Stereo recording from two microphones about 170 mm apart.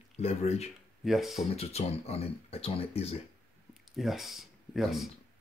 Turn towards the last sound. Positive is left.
turn(degrees=0)  # may be behind; listen again after turning